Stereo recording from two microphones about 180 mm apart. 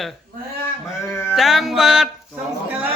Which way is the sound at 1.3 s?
Centre (ahead or behind).